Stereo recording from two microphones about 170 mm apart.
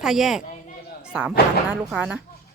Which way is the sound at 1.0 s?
5° right (ahead or behind).